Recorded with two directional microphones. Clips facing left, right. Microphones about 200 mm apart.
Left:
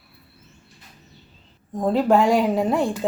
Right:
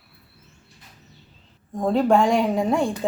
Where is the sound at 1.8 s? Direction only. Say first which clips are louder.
Even; centre (ahead or behind).